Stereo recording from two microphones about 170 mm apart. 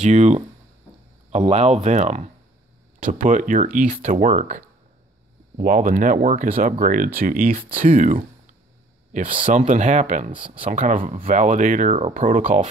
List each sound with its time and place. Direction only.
0.0 s speech: 45° right (ahead or behind)
3.3 s speech: 50° right (ahead or behind)
10.3 s speech: 30° right (ahead or behind)
10.7 s speech: 50° right (ahead or behind)